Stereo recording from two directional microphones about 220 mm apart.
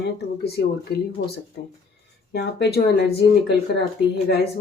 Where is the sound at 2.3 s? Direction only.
45° left (ahead or behind).